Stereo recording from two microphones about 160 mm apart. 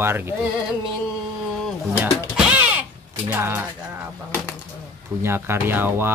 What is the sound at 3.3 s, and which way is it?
Speech, 10° right (ahead or behind).